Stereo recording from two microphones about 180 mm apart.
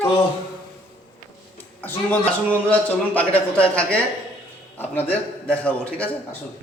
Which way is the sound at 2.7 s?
10° left (ahead or behind).